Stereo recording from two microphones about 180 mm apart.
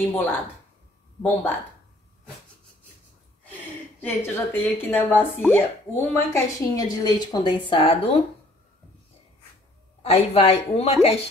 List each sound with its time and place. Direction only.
0.1 s a woman's voice: 10° left (ahead or behind)
4.0 s speech: 10° left (ahead or behind); by 8.2 s 30° left (ahead or behind)
10.0 s speech: 35° left (ahead or behind)